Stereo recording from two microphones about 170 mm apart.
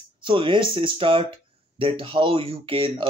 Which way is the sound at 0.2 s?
30° right (ahead or behind).